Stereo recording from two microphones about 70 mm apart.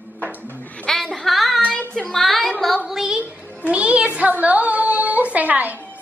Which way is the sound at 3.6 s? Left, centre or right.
Centre.